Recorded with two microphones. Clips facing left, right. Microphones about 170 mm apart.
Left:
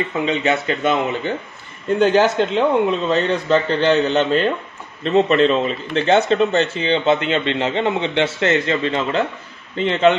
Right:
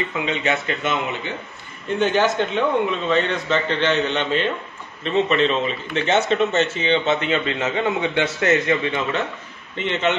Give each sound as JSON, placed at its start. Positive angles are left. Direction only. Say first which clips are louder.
{"t": 0.2, "sound": "speech", "louder": "left 5 dB", "side_deg": 35}